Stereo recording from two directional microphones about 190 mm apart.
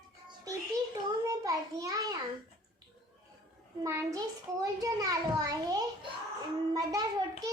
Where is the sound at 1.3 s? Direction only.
15° right (ahead or behind).